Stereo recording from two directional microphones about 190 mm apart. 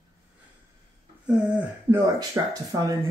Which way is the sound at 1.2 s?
5° right (ahead or behind).